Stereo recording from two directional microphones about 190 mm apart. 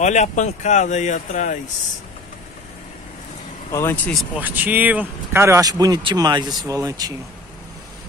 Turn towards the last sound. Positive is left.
turn(degrees=-20)  # may be behind; listen again after turning